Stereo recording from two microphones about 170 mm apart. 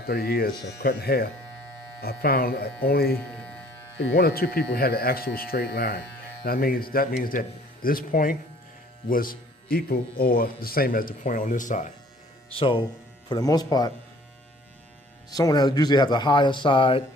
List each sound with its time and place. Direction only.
0.0 s speech: 65° left (ahead or behind)
3.2 s speech: 5° left (ahead or behind)
3.9 s speech: 80° left
6.4 s speech: 60° left (ahead or behind)
12.5 s speech: 30° left (ahead or behind)
15.3 s speech: 20° left (ahead or behind)